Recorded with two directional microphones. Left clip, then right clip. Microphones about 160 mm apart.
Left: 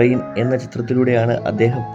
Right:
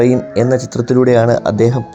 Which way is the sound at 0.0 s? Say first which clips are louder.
Right 4 dB; 30° right (ahead or behind).